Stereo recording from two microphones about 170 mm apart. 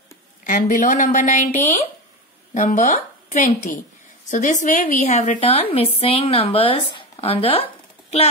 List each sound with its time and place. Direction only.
0.4 s a woman's voice: 50° left (ahead or behind)
2.5 s a woman's voice: 45° left (ahead or behind)
5.4 s speech: 35° left (ahead or behind)